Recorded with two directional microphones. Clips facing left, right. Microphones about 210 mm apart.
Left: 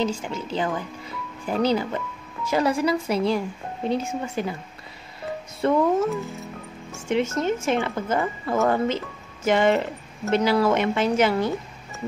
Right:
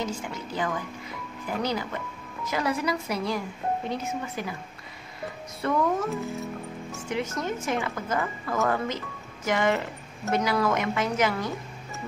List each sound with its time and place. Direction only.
0.0 s speech: 25° left (ahead or behind)
5.6 s speech: 25° left (ahead or behind)
7.1 s speech: 25° left (ahead or behind)